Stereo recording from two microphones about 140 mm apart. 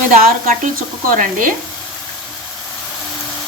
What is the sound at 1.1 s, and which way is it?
Frying, 80° right.